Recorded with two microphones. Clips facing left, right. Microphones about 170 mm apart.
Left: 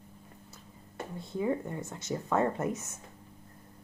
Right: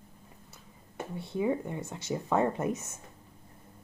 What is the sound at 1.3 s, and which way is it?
Speech, 15° right (ahead or behind).